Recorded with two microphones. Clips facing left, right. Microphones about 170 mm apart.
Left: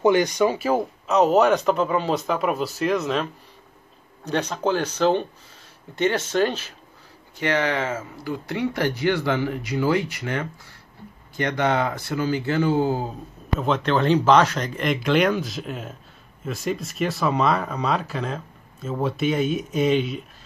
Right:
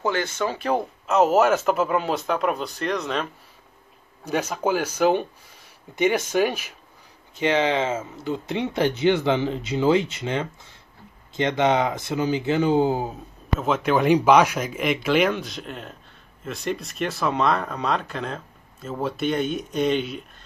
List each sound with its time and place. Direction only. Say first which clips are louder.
0.0 s speech: left 7 dB; 15° left (ahead or behind); by 13.1 s 20° right (ahead or behind)
13.6 s speech: even; 5° right (ahead or behind)